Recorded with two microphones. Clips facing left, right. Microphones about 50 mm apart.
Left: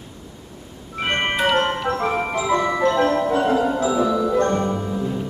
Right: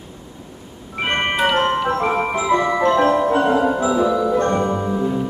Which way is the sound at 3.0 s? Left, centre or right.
Centre.